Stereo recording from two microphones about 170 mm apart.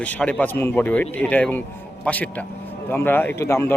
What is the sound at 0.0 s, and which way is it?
A man's voice, 10° left (ahead or behind).